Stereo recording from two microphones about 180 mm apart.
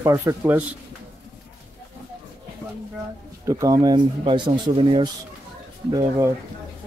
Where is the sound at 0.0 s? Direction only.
15° right (ahead or behind).